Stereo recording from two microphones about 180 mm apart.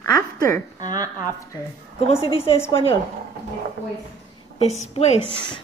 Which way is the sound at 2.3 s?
35° left (ahead or behind).